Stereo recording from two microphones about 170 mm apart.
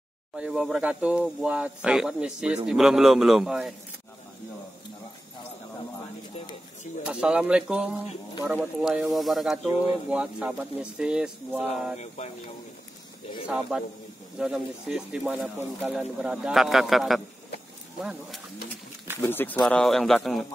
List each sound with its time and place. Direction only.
0.4 s speech: centre (ahead or behind)
7.0 s speech: 5° right (ahead or behind)
13.5 s speech: 5° right (ahead or behind)
19.2 s speech: 10° left (ahead or behind)